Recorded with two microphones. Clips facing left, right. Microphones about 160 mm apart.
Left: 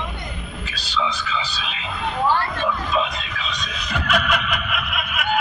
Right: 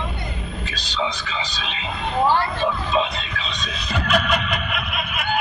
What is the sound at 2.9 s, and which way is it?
Music, 30° right (ahead or behind).